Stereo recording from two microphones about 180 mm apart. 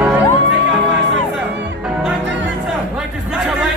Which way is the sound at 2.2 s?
90° right.